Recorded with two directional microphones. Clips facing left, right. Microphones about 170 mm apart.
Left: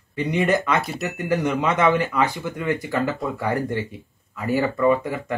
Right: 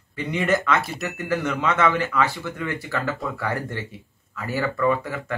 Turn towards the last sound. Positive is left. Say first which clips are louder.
# left 3 dB
turn(degrees=15)  # may be behind; listen again after turning